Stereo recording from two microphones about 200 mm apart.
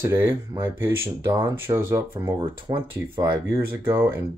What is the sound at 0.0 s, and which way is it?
Speech, 10° right (ahead or behind).